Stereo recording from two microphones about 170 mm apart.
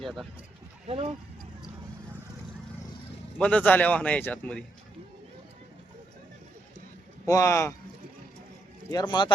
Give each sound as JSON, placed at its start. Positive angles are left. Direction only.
{"t": 0.9, "sound": "speech", "side_deg": -35}
{"t": 3.3, "sound": "a man's voice", "side_deg": 5}
{"t": 7.3, "sound": "speech", "side_deg": 20}
{"t": 8.9, "sound": "speech", "side_deg": 25}